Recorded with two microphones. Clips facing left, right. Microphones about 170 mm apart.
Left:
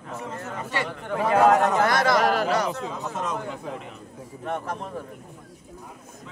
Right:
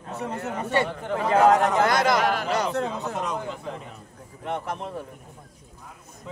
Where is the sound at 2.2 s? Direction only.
40° left (ahead or behind).